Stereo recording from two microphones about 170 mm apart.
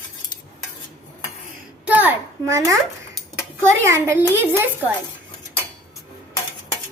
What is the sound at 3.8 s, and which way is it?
Speech, 15° right (ahead or behind).